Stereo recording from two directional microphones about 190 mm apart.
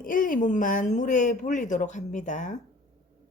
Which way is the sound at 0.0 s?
45° left (ahead or behind).